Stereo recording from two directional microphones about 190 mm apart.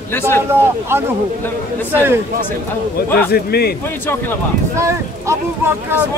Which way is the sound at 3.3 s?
55° left (ahead or behind).